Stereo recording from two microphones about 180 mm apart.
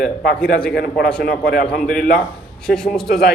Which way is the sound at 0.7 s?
55° left (ahead or behind).